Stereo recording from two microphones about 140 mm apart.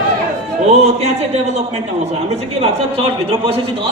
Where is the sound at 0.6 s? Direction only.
50° right (ahead or behind).